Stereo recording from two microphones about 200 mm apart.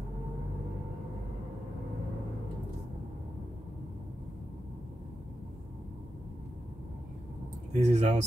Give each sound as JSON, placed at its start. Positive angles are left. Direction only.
{"t": 7.7, "sound": "speech", "side_deg": -35}